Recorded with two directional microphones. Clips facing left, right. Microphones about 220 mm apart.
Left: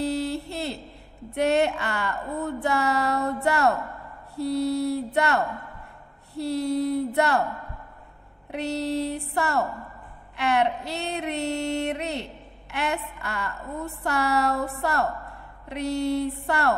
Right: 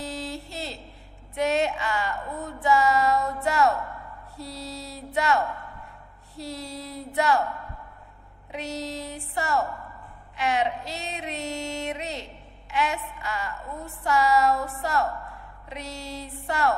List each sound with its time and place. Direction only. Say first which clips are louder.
0.0 s a sound: left 8 dB; 60° left (ahead or behind)
1.3 s female singing: left 3 dB; 60° left (ahead or behind)
3.4 s music: even; 60° left (ahead or behind)
4.4 s female singing: left 13 dB; 60° left (ahead or behind)
8.5 s female singing: left 6 dB; 60° left (ahead or behind)